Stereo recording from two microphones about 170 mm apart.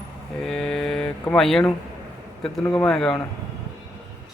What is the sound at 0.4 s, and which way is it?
Mantra, 5° left (ahead or behind).